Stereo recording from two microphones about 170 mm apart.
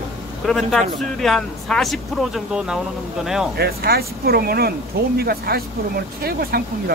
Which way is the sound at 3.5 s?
65° right (ahead or behind).